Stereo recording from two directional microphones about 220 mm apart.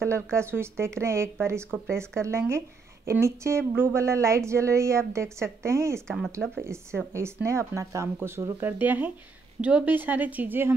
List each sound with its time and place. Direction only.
0.0 s a woman's voice: 10° right (ahead or behind)
6.0 s speech: centre (ahead or behind)
7.1 s a woman's voice: 10° right (ahead or behind)